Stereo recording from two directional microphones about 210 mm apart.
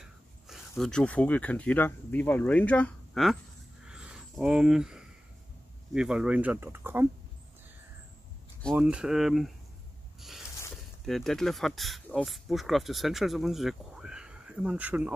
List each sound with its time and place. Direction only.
0.0 s speech: centre (ahead or behind)
3.8 s a sound: 5° right (ahead or behind)
5.9 s speech: 5° right (ahead or behind)
8.7 s speech: 5° right (ahead or behind)
11.1 s speech: centre (ahead or behind)